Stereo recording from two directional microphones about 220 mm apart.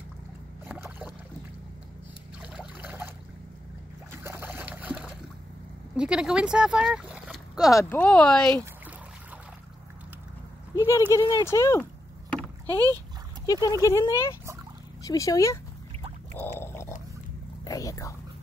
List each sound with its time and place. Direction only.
0.7 s boat: 10° right (ahead or behind)
2.4 s a sound: 5° right (ahead or behind)
4.2 s trickle: 10° right (ahead or behind)
5.9 s speech: 5° right (ahead or behind)
10.8 s speech: 15° left (ahead or behind)
12.6 s speech: 15° right (ahead or behind)
13.5 s speech: 15° left (ahead or behind)
16.3 s pig: 10° left (ahead or behind)
17.6 s whispering: 15° left (ahead or behind)